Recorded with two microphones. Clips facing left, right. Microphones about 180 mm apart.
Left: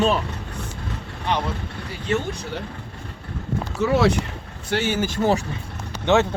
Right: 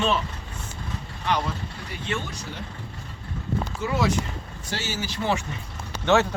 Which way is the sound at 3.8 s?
70° left (ahead or behind).